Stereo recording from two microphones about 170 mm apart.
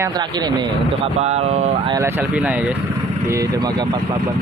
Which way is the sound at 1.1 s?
40° right (ahead or behind).